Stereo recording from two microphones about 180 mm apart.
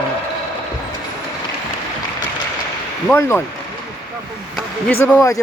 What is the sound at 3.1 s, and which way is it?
Speech, 15° left (ahead or behind).